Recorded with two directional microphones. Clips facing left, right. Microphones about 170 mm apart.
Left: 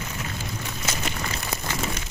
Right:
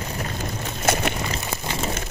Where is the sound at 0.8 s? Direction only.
60° right (ahead or behind).